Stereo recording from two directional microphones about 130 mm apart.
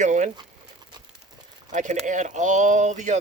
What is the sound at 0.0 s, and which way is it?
Speech, 70° right (ahead or behind).